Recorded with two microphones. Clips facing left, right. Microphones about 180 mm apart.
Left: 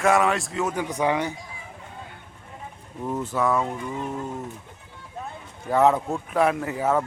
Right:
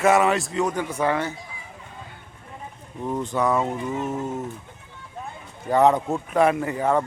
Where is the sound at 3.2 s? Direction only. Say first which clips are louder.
Right 1 dB; 5° left (ahead or behind).